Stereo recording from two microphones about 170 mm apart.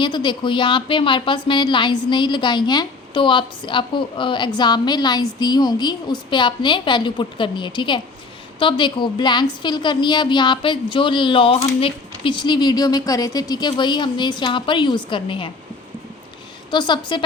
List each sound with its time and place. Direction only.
0.0 s a woman's voice: 25° left (ahead or behind)
16.7 s a woman's voice: 25° left (ahead or behind)